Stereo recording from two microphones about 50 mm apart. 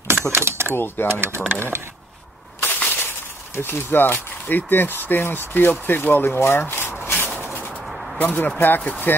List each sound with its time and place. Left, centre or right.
0.3 s speech: right
0.7 s speech: left
1.5 s speech: right
2.6 s a sound: left
3.5 s speech: left
7.8 s a sound: centre
8.2 s speech: left